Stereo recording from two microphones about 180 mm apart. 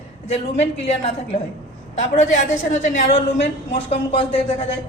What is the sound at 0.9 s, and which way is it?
A woman's voice, 35° left (ahead or behind).